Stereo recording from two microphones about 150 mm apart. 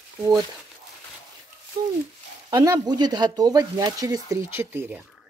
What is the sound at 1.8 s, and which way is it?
Speech, 30° right (ahead or behind).